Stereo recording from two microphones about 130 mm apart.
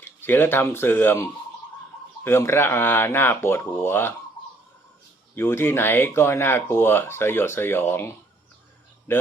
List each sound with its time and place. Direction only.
0.0 s speech: 15° left (ahead or behind)
5.3 s a man's voice: 20° left (ahead or behind)